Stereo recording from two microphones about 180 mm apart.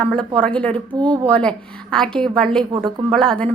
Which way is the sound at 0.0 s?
5° left (ahead or behind).